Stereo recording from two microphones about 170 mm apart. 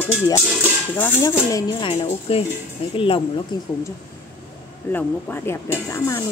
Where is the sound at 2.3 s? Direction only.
35° left (ahead or behind).